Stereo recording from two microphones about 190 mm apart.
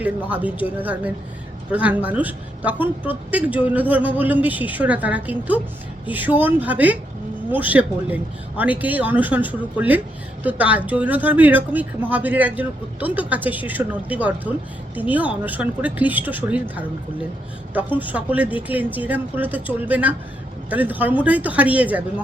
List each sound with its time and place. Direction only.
0.0 s speech: 10° right (ahead or behind)